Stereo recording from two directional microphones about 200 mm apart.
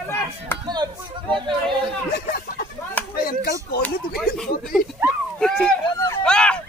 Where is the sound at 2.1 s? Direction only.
50° left (ahead or behind).